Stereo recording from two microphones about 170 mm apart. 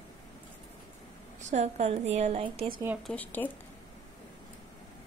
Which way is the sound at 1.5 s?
40° right (ahead or behind).